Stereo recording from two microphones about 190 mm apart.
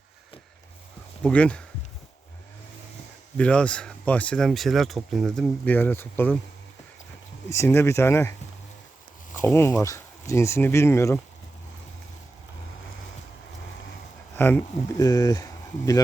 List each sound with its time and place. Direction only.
1.2 s speech: 5° left (ahead or behind)
3.3 s speech: 5° left (ahead or behind)
7.5 s speech: 15° left (ahead or behind)
9.4 s speech: 15° left (ahead or behind)
14.3 s speech: 10° left (ahead or behind)